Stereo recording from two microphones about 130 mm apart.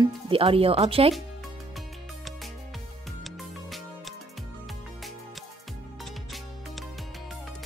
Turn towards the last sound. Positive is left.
turn(degrees=0)  # may be behind; listen again after turning